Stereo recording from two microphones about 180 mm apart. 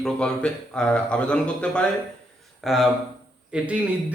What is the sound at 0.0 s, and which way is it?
A man's voice, 5° left (ahead or behind).